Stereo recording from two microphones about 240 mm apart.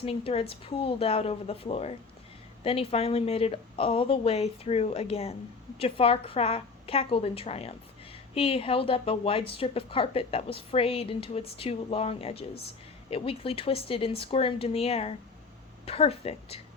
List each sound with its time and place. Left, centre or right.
0.0 s a woman's voice: left